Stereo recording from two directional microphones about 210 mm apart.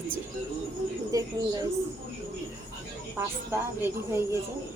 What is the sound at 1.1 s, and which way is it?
Speech, 15° right (ahead or behind).